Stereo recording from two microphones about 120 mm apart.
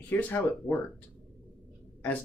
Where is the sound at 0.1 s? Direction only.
15° left (ahead or behind).